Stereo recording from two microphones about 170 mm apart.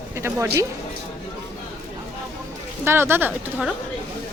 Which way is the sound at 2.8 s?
15° right (ahead or behind).